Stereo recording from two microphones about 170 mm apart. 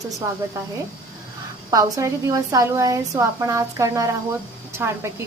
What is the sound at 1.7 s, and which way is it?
A woman's voice, 20° right (ahead or behind).